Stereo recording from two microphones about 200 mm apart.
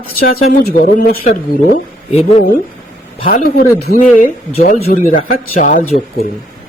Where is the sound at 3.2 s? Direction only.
45° left (ahead or behind).